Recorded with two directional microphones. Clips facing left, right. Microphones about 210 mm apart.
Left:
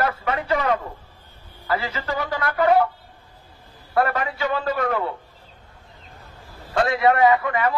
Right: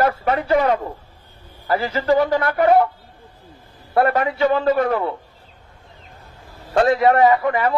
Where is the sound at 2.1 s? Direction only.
30° right (ahead or behind).